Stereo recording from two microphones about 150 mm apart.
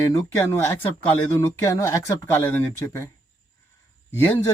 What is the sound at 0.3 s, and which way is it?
Speech, 15° left (ahead or behind).